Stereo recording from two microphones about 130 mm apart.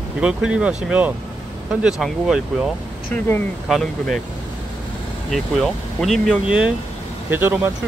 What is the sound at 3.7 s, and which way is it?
Speech, centre (ahead or behind).